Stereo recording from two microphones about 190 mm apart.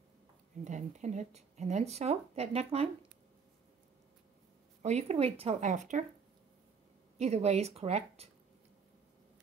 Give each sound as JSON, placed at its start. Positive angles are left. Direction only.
{"t": 0.7, "sound": "speech", "side_deg": -40}
{"t": 4.8, "sound": "a woman's voice", "side_deg": -35}
{"t": 7.2, "sound": "speech", "side_deg": -35}